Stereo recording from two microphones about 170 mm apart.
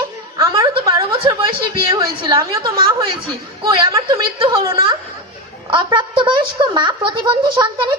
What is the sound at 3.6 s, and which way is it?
A woman's voice, 30° right (ahead or behind).